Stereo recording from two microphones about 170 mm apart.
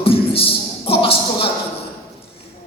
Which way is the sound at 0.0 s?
35° left (ahead or behind).